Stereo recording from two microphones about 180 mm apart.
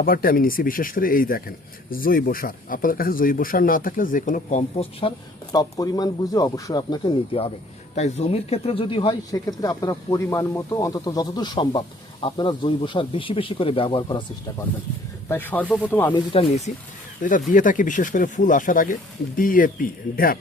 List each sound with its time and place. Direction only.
0.0 s speech: 55° left (ahead or behind); by 14.3 s 25° left (ahead or behind)
15.3 s speech: 10° left (ahead or behind)
16.1 s speech: 30° left (ahead or behind)
17.5 s speech: 45° left (ahead or behind)